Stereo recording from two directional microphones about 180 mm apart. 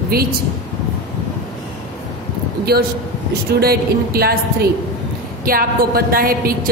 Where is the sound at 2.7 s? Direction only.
60° right (ahead or behind).